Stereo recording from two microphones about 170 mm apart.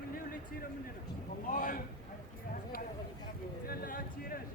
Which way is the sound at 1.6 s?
55° left (ahead or behind).